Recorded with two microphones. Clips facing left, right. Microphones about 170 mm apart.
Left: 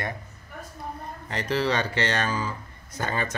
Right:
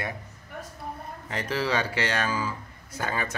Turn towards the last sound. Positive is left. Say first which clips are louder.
# left 1 dB
turn(degrees=-5)  # may be behind; listen again after turning